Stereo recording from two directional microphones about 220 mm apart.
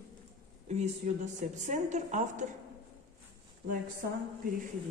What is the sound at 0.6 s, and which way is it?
A woman's voice, 30° right (ahead or behind).